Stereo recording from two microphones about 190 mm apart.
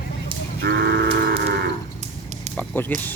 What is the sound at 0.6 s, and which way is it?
Livestock, 60° right (ahead or behind).